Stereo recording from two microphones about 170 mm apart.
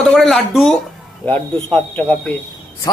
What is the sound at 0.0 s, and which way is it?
Speech, centre (ahead or behind).